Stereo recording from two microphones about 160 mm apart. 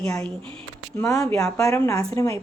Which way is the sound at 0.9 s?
20° left (ahead or behind).